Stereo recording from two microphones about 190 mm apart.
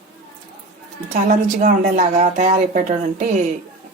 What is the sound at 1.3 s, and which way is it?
A woman's voice, 40° right (ahead or behind).